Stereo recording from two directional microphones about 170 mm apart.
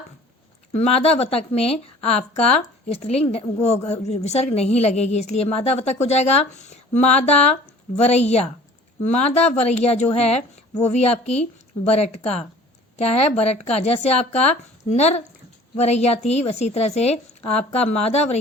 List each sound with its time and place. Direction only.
0.7 s a woman's voice: 40° left (ahead or behind)